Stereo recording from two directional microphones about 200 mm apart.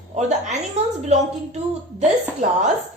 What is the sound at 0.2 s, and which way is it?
Speech, 35° right (ahead or behind).